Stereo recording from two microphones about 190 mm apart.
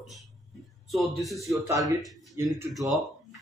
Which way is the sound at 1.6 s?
15° right (ahead or behind).